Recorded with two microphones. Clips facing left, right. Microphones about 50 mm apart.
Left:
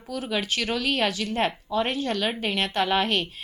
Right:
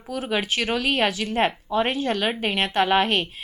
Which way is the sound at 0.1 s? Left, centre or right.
Centre.